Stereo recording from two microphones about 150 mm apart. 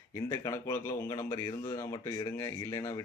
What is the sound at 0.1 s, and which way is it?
Speech, 20° left (ahead or behind).